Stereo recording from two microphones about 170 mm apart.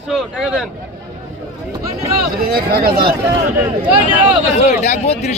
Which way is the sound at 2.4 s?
60° right (ahead or behind).